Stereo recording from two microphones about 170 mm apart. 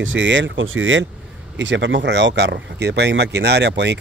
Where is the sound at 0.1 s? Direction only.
90° right.